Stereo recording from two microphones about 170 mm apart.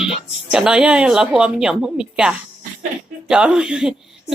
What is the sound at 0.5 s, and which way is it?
A woman's voice, 5° right (ahead or behind).